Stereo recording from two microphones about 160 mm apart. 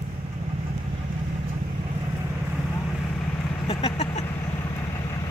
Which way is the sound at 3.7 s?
40° left (ahead or behind).